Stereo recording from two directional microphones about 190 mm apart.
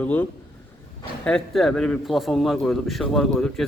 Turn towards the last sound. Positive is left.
turn(degrees=0)  # may be behind; listen again after turning